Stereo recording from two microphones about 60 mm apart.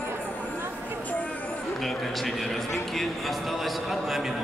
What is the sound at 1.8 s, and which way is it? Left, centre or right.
A man's voice, centre.